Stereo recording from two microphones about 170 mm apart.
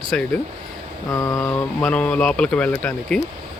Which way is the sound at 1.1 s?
20° left (ahead or behind).